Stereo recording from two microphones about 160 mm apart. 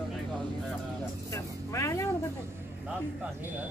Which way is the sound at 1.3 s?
20° left (ahead or behind).